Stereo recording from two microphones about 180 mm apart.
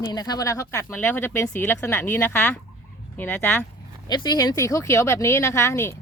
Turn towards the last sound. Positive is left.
turn(degrees=15)  # may be behind; listen again after turning